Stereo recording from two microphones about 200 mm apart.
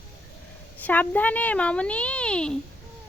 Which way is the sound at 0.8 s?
10° left (ahead or behind).